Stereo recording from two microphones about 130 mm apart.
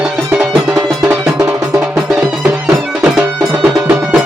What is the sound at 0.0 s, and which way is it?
Music, 5° right (ahead or behind).